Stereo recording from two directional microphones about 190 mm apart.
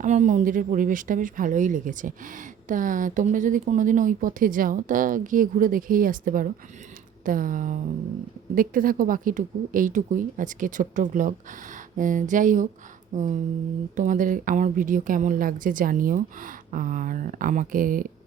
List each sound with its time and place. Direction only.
0.0 s speech: 40° right (ahead or behind)
13.1 s a sound: 40° right (ahead or behind)
13.9 s speech: 40° right (ahead or behind)